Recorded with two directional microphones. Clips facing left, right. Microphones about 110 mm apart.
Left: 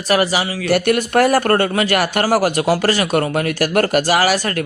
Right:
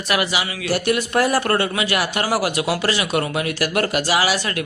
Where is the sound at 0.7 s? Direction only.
55° left (ahead or behind).